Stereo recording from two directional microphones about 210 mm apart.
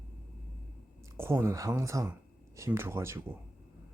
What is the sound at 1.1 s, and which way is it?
Speech, 10° right (ahead or behind).